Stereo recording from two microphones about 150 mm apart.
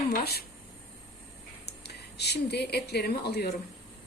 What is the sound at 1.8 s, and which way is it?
Speech, 90° left.